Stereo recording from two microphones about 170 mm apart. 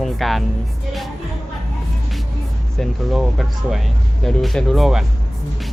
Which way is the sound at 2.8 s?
Centre (ahead or behind).